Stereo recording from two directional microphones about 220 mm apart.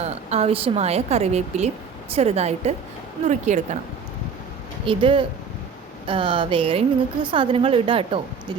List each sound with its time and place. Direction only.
0.0 s a woman's voice: 30° right (ahead or behind)
4.9 s a woman's voice: 25° right (ahead or behind)